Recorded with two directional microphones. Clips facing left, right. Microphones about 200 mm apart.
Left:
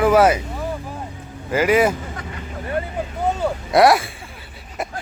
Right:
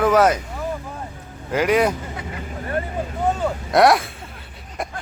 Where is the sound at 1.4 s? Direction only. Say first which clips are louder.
Left 1 dB; 5° left (ahead or behind).